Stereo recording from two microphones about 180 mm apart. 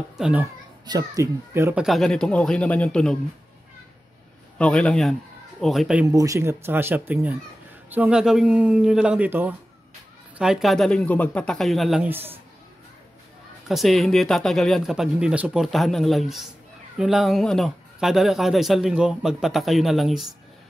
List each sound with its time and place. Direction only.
0.2 s speech: 10° right (ahead or behind)
0.8 s speech: 20° right (ahead or behind)
1.9 s a man's voice: 5° left (ahead or behind)
4.6 s a man's voice: 5° left (ahead or behind)
6.1 s a man's voice: 20° right (ahead or behind)
13.7 s a man's voice: centre (ahead or behind)